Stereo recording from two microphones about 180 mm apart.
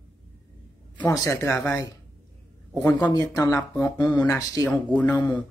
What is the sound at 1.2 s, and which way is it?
Speech, 15° left (ahead or behind).